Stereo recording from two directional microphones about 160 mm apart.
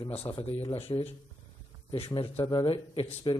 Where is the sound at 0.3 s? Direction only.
40° left (ahead or behind).